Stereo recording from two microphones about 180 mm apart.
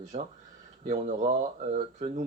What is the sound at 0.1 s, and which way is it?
Speech, 35° right (ahead or behind).